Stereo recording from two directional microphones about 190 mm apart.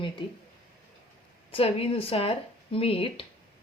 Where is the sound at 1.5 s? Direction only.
30° left (ahead or behind).